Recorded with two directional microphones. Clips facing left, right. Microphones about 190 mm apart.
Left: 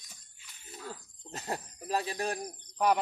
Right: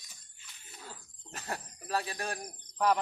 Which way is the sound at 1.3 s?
20° left (ahead or behind).